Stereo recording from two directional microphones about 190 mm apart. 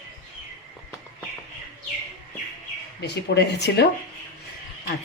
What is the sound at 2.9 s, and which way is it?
Speech, 60° left (ahead or behind).